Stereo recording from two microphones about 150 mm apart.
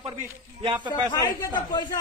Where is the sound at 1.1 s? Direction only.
25° left (ahead or behind).